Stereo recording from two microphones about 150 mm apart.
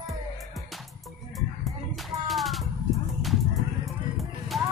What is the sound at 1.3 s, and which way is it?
Music, centre (ahead or behind).